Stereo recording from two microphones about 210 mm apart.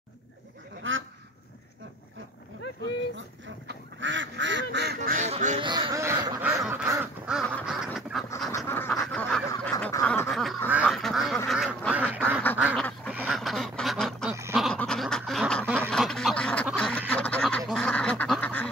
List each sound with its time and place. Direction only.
0.8 s duck: 70° right (ahead or behind)
3.6 s goose: 60° right (ahead or behind); by 5.6 s 35° right (ahead or behind)
5.6 s duck: 20° right (ahead or behind)
7.6 s goose: centre (ahead or behind)
8.5 s duck: 10° left (ahead or behind)
14.5 s a sound: centre (ahead or behind)
15.9 s duck: 5° left (ahead or behind)